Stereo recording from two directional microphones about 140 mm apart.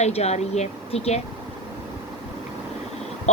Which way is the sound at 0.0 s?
50° left (ahead or behind).